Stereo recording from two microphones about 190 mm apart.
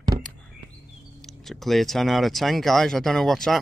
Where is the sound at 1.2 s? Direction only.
Centre (ahead or behind).